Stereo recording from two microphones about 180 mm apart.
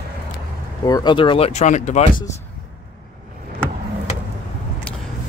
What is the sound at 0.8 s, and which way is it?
Speech, 20° left (ahead or behind).